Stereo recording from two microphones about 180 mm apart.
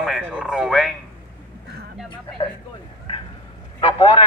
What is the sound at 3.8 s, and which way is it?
Speech, 30° left (ahead or behind).